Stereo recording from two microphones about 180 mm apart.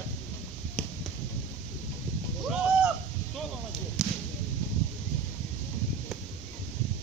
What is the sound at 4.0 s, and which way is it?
Whip, 5° right (ahead or behind).